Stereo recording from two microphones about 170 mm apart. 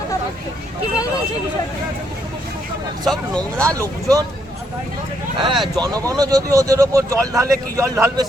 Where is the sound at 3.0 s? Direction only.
5° left (ahead or behind).